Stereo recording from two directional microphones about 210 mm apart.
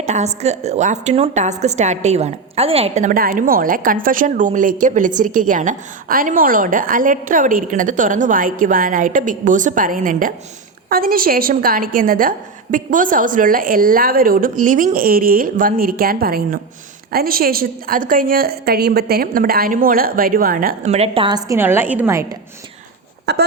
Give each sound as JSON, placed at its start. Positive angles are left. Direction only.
{"t": 0.0, "sound": "a woman's voice", "side_deg": -35}
{"t": 23.3, "sound": "a woman's voice", "side_deg": -55}